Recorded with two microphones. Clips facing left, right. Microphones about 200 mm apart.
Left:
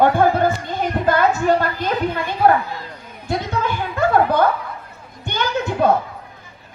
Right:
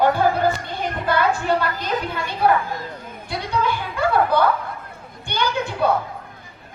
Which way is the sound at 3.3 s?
45° left (ahead or behind).